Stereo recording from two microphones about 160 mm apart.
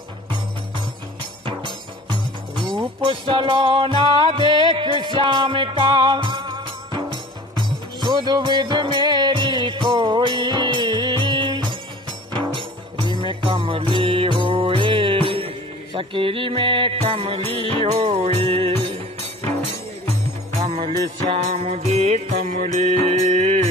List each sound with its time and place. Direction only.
1.4 s music: 30° right (ahead or behind)
3.0 s music: 30° right (ahead or behind)
21.4 s music: 40° right (ahead or behind)